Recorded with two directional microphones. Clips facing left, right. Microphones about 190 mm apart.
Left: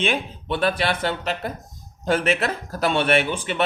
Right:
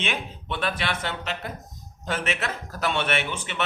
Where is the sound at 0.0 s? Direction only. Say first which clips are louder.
Left 6 dB; 35° left (ahead or behind).